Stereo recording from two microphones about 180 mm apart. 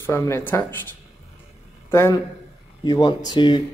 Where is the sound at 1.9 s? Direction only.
15° left (ahead or behind).